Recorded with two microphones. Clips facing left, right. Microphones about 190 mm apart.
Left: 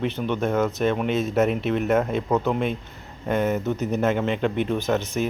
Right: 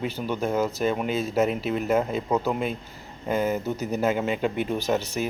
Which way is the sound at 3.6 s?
35° right (ahead or behind).